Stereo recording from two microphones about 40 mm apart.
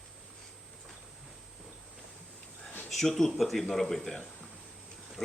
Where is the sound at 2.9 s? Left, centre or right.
Centre.